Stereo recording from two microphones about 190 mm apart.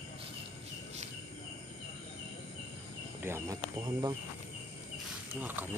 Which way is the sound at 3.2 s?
15° right (ahead or behind).